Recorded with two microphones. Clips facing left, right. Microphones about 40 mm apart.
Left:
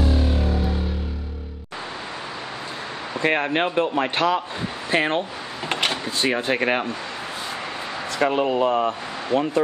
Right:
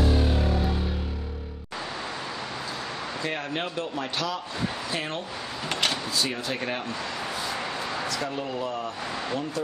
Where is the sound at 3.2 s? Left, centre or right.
Left.